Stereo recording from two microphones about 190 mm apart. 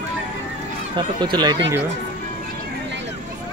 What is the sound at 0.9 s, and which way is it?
Speech, 25° right (ahead or behind).